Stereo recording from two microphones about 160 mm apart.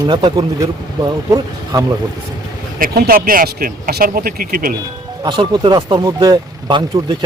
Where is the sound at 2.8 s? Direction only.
65° right (ahead or behind).